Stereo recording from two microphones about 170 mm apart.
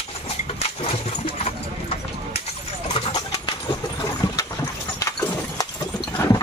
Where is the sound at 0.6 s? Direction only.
35° left (ahead or behind).